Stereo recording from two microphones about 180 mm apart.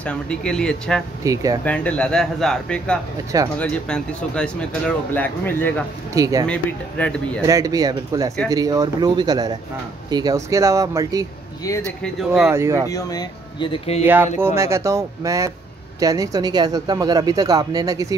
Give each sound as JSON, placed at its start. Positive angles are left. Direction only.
{"t": 0.0, "sound": "speech", "side_deg": 5}
{"t": 1.2, "sound": "speech", "side_deg": -20}
{"t": 1.6, "sound": "speech", "side_deg": 10}
{"t": 6.1, "sound": "speech", "side_deg": -20}
{"t": 6.4, "sound": "speech", "side_deg": 5}
{"t": 7.4, "sound": "speech", "side_deg": -20}
{"t": 12.0, "sound": "speech", "side_deg": 0}
{"t": 12.4, "sound": "speech", "side_deg": -15}
{"t": 12.8, "sound": "speech", "side_deg": 20}
{"t": 14.0, "sound": "speech", "side_deg": -10}